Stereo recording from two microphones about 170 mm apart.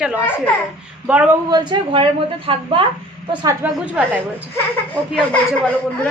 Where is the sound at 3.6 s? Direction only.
10° right (ahead or behind).